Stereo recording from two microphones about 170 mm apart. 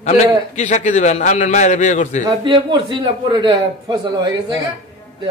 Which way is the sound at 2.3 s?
30° right (ahead or behind).